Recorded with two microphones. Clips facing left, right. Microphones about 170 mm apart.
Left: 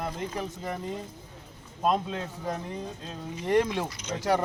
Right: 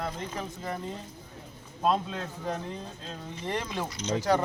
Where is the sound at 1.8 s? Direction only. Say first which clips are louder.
Left 1 dB; 10° left (ahead or behind).